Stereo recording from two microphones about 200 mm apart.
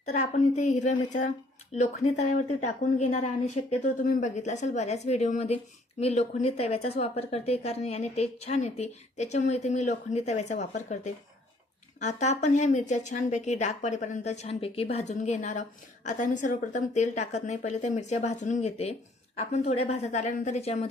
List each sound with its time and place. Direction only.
0.1 s a woman's voice: 35° left (ahead or behind)